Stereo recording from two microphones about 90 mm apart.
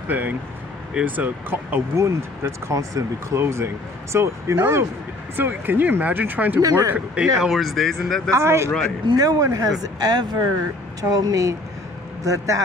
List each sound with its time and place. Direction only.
0.1 s speech: 20° right (ahead or behind)
6.6 s speech: 40° right (ahead or behind)
7.3 s speech: 5° right (ahead or behind)
8.3 s speech: 30° right (ahead or behind)
9.0 s speech: 45° right (ahead or behind)